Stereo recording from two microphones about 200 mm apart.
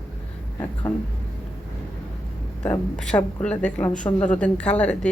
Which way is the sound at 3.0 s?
5° left (ahead or behind).